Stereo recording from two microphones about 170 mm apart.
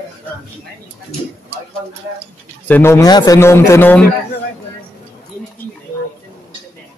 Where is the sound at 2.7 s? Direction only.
15° left (ahead or behind).